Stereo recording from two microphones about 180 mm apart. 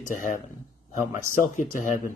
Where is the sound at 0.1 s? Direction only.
45° left (ahead or behind).